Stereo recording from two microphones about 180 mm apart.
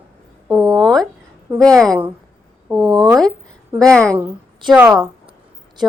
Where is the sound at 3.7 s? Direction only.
5° left (ahead or behind).